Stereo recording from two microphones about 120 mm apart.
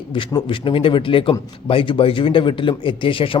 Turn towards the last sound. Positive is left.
turn(degrees=45)  # may be behind; listen again after turning